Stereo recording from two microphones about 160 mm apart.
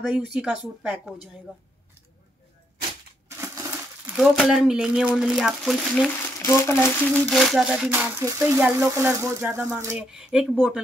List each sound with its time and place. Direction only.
0.1 s speech: 5° right (ahead or behind)
3.3 s coin: 20° right (ahead or behind)
4.1 s speech: 5° right (ahead or behind)
6.4 s speech: 15° left (ahead or behind)
7.2 s speech: centre (ahead or behind); by 9.9 s 15° right (ahead or behind)
9.9 s speech: 5° right (ahead or behind)